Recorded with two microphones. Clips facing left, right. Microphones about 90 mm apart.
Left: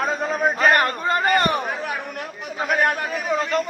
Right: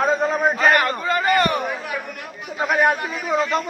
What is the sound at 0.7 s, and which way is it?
A man's voice, 35° left (ahead or behind).